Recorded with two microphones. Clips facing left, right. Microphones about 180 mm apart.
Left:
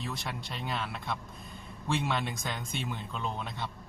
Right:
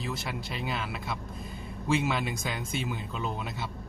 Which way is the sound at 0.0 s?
Centre (ahead or behind).